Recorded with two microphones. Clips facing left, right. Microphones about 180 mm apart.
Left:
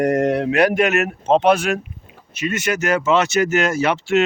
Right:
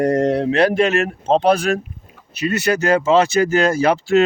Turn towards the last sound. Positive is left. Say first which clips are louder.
# right 3 dB
turn(degrees=-35)  # may be behind; listen again after turning